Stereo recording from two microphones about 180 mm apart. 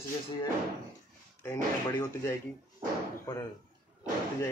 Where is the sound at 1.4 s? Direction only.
20° left (ahead or behind).